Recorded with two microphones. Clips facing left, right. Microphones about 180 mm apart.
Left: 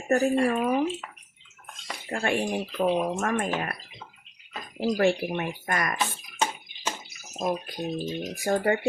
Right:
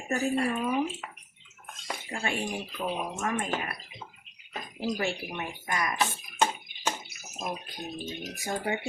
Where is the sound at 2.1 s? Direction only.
60° left (ahead or behind).